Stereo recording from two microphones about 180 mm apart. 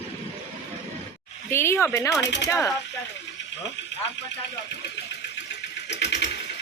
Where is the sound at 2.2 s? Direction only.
75° left (ahead or behind).